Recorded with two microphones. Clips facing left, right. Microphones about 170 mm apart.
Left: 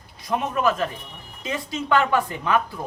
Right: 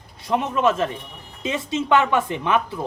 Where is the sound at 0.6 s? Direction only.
25° right (ahead or behind).